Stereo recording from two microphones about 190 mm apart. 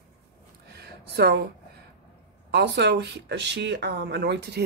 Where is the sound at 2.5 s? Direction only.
60° right (ahead or behind).